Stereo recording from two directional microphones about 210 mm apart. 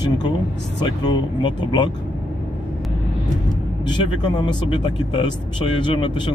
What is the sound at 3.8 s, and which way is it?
Speech, 20° left (ahead or behind).